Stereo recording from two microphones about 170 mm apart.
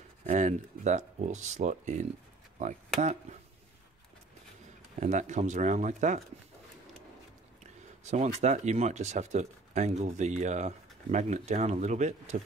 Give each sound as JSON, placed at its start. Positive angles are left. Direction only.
{"t": 0.3, "sound": "speech", "side_deg": -45}
{"t": 5.0, "sound": "speech", "side_deg": -45}
{"t": 8.1, "sound": "speech", "side_deg": -45}